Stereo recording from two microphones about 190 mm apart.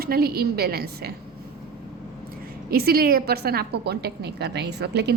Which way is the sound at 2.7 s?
50° right (ahead or behind).